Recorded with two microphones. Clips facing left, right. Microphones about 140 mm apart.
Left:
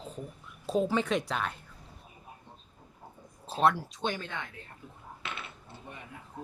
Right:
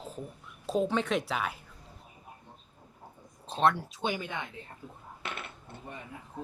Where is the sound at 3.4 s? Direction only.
5° left (ahead or behind); by 4.5 s 15° right (ahead or behind).